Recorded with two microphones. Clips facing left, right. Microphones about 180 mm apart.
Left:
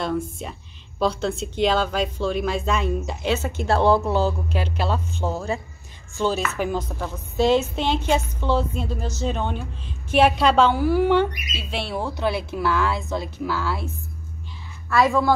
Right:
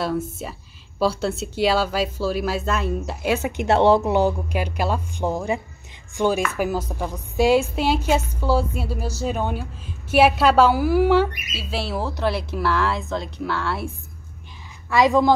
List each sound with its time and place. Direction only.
0.0 s a woman's voice: 5° right (ahead or behind)
14.9 s speech: 15° right (ahead or behind)